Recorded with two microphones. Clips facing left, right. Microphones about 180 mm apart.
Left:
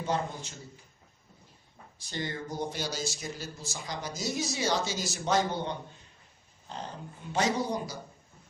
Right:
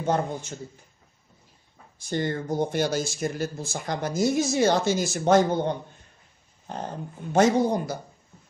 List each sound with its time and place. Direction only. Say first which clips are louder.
0.0 s speech: right 6 dB; 50° right (ahead or behind)
2.0 s speech: right 9 dB; 50° right (ahead or behind)
7.3 s speech: right 9 dB; 50° right (ahead or behind)